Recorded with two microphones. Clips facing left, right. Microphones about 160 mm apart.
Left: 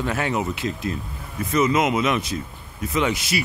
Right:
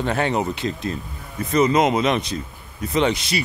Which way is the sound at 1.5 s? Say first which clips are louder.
Right 3 dB; 35° right (ahead or behind).